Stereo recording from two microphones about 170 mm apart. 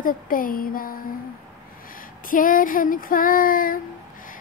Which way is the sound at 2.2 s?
55° left (ahead or behind).